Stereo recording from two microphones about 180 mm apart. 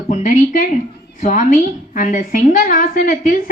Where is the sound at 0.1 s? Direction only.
45° left (ahead or behind).